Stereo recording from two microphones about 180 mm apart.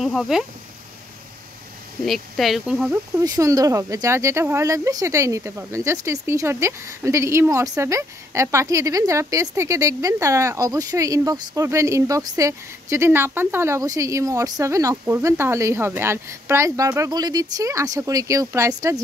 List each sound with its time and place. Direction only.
0.0 s speech: centre (ahead or behind)
2.0 s speech: centre (ahead or behind)
3.2 s speech: 20° right (ahead or behind)